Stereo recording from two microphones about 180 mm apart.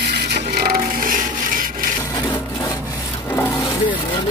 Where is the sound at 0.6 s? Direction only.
55° right (ahead or behind).